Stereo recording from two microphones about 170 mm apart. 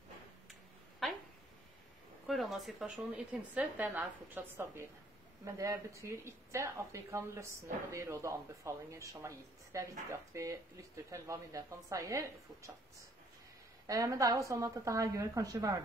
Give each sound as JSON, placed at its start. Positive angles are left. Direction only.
{"t": 1.0, "sound": "a sound", "side_deg": 0}
{"t": 2.2, "sound": "speech", "side_deg": 0}
{"t": 13.8, "sound": "a woman's voice", "side_deg": -20}